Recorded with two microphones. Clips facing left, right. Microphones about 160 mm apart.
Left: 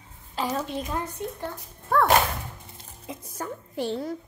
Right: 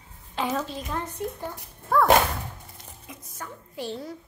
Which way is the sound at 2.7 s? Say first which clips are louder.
Left 5 dB; 30° left (ahead or behind).